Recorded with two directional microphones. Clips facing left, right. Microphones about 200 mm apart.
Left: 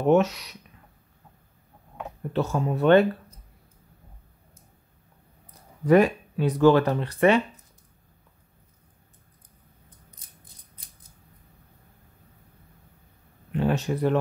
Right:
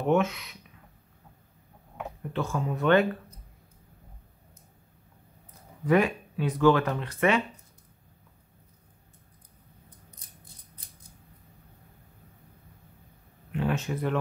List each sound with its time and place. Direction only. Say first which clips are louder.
0.1 s speech: left 4 dB; 40° left (ahead or behind)
2.3 s speech: left 5 dB; 40° left (ahead or behind)
5.9 s speech: left 5 dB; 40° left (ahead or behind)
13.5 s speech: left 4 dB; 35° left (ahead or behind)